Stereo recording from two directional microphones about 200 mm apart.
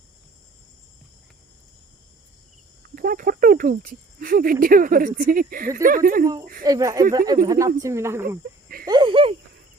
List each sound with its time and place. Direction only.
2.9 s cricket: 45° right (ahead or behind)
4.6 s speech: 45° right (ahead or behind)
6.7 s speech: 20° right (ahead or behind)
8.9 s a sound: 25° right (ahead or behind)